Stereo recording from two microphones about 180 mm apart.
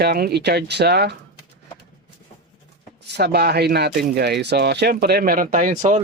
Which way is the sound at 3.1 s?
65° right (ahead or behind).